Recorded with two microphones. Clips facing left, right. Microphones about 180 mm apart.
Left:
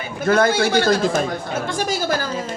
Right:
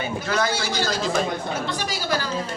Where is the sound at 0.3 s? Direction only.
55° left (ahead or behind).